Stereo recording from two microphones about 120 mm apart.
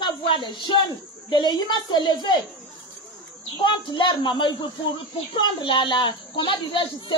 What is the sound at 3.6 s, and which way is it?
A woman's voice, 45° left (ahead or behind).